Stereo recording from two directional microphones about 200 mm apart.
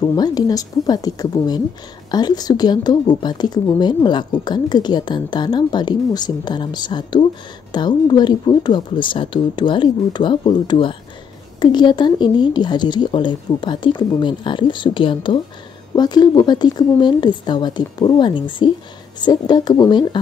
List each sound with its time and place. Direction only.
0.1 s speech: 20° left (ahead or behind)